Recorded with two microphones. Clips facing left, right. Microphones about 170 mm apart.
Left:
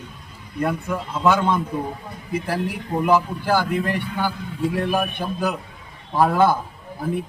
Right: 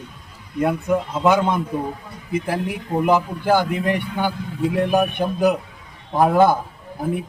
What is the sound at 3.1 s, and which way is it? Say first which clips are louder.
A man's voice: right 1 dB; 20° right (ahead or behind).